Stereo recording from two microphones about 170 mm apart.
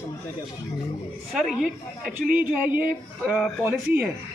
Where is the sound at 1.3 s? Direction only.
Centre (ahead or behind).